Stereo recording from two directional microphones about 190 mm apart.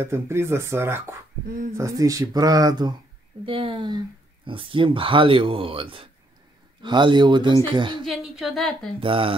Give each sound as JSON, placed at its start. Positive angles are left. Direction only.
{"t": 0.0, "sound": "speech", "side_deg": -15}
{"t": 8.0, "sound": "speech", "side_deg": 0}
{"t": 9.0, "sound": "speech", "side_deg": -30}